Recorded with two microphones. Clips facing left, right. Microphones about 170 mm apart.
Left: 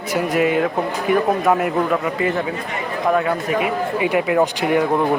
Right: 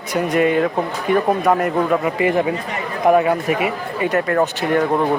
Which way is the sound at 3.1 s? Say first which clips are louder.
Right 4 dB; 5° right (ahead or behind).